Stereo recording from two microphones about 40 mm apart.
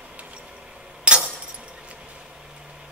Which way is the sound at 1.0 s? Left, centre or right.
Right.